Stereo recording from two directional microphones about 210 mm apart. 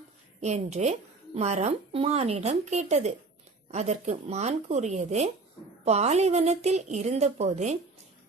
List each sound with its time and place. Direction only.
0.4 s a woman's voice: 30° right (ahead or behind)